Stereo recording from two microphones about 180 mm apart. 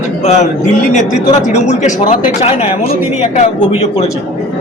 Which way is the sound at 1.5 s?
40° left (ahead or behind).